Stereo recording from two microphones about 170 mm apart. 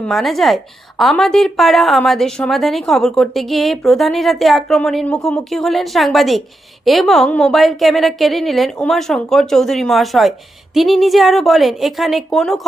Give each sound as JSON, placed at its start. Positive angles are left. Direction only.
{"t": 0.0, "sound": "a woman's voice", "side_deg": 0}